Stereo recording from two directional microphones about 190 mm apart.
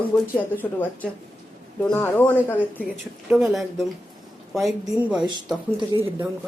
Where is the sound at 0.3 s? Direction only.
10° left (ahead or behind).